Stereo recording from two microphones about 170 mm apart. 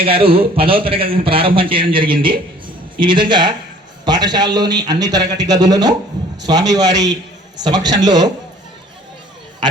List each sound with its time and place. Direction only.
0.0 s a man's voice: 35° right (ahead or behind)